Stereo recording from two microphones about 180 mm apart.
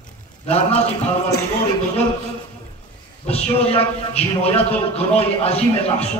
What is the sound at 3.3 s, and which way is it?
A man's voice, 35° left (ahead or behind).